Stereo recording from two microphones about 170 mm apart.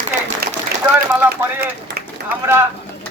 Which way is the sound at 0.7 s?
65° right (ahead or behind).